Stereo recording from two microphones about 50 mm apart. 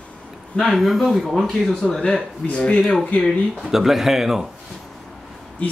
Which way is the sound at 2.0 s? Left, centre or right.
Left.